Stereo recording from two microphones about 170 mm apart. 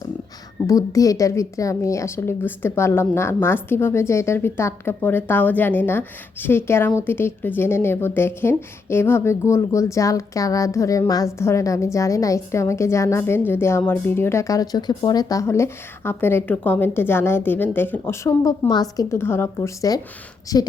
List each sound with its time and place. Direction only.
0.7 s a woman's voice: 20° left (ahead or behind)